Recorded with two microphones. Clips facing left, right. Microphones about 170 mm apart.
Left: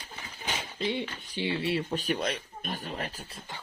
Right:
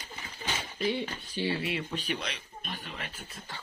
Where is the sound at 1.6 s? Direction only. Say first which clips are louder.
Left 4 dB; 35° left (ahead or behind).